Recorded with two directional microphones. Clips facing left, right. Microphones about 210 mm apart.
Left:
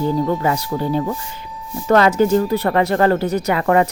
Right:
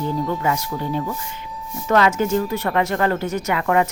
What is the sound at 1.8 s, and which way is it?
Speech, 35° left (ahead or behind).